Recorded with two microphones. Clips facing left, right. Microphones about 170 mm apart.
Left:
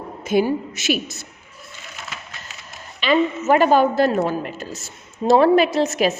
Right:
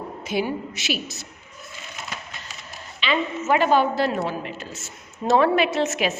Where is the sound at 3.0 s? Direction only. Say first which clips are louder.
Left 6 dB; 45° left (ahead or behind).